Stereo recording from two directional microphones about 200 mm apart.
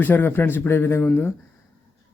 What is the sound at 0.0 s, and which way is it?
Speech, 10° left (ahead or behind).